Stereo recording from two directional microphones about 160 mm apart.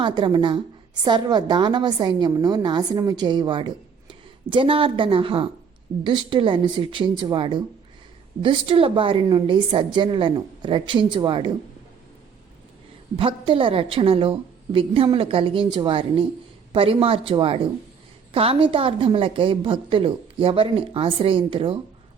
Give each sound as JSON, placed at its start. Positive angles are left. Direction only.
{"t": 0.0, "sound": "a woman's voice", "side_deg": -30}
{"t": 13.1, "sound": "a woman's voice", "side_deg": -35}